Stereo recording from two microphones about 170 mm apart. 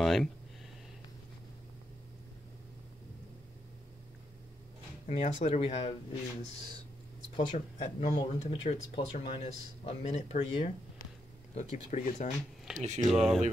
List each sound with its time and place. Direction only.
0.0 s a sound: centre (ahead or behind)
5.0 s speech: 40° left (ahead or behind)
7.3 s speech: 40° left (ahead or behind)
12.7 s speech: 45° right (ahead or behind)
13.1 s speech: 5° right (ahead or behind)